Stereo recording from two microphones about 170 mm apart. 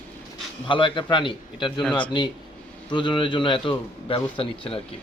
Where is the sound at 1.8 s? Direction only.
Centre (ahead or behind).